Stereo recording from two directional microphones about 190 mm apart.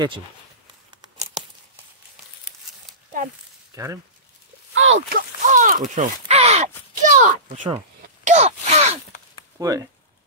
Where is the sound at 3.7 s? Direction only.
15° right (ahead or behind).